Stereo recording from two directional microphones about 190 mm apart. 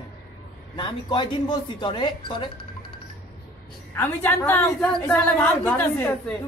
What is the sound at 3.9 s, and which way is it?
A woman's voice, 10° left (ahead or behind).